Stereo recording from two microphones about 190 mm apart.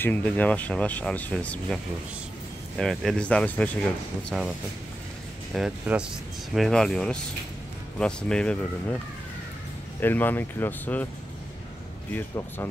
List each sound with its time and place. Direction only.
0.0 s speech: 10° left (ahead or behind)
2.8 s speech: centre (ahead or behind)
5.5 s speech: 5° right (ahead or behind)
9.9 s speech: 10° left (ahead or behind)
12.1 s speech: 10° left (ahead or behind)